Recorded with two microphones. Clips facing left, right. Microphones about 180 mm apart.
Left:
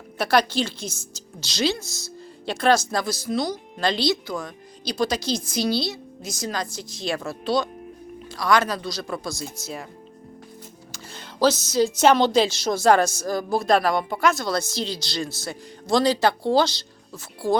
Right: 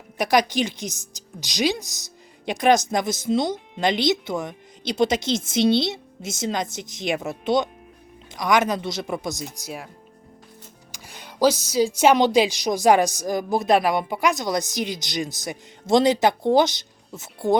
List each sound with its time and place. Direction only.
0.2 s speech: 15° right (ahead or behind)
10.9 s speech: 15° right (ahead or behind)